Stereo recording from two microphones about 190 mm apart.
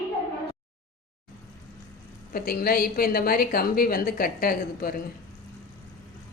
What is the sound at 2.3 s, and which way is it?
A woman's voice, 50° left (ahead or behind).